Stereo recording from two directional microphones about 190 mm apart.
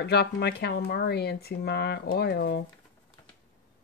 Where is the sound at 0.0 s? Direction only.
60° left (ahead or behind).